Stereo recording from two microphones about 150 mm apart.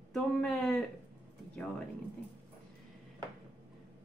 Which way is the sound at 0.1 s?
5° left (ahead or behind).